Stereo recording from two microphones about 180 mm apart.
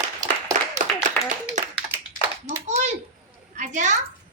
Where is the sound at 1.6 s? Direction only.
40° right (ahead or behind).